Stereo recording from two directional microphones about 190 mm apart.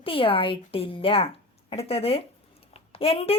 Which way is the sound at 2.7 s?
30° left (ahead or behind).